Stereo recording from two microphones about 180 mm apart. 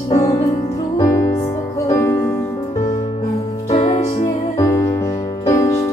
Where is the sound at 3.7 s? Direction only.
35° left (ahead or behind).